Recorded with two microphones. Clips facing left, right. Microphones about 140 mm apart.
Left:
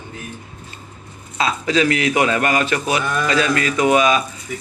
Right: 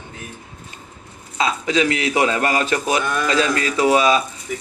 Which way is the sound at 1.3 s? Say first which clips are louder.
Left 1 dB; 20° right (ahead or behind).